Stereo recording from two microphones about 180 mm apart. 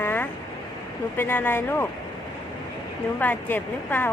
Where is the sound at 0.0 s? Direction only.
10° left (ahead or behind).